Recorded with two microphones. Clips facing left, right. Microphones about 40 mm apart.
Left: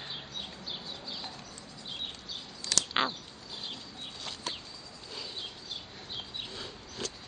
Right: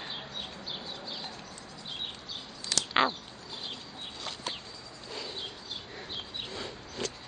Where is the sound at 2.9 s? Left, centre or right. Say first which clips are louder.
Right 6 dB; centre.